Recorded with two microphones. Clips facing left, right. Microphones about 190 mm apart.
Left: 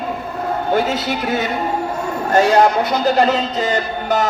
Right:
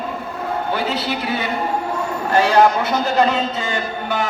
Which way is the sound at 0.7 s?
45° left (ahead or behind).